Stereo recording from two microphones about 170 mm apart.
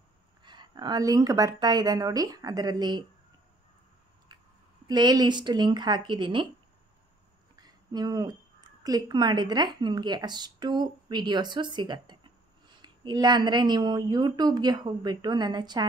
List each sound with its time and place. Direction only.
0.4 s a woman's voice: 25° right (ahead or behind)
4.8 s a woman's voice: 25° right (ahead or behind)
7.6 s a woman's voice: 25° right (ahead or behind)